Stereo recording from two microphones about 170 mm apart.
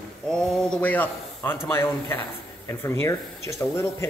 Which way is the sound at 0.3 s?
5° left (ahead or behind).